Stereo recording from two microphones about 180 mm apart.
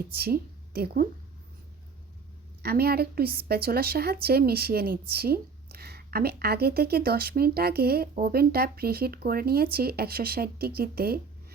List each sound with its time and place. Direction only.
0.1 s speech: 60° right (ahead or behind)
2.6 s a woman's voice: 60° right (ahead or behind)